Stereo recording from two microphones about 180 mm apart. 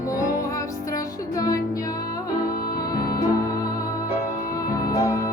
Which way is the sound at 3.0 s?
55° left (ahead or behind).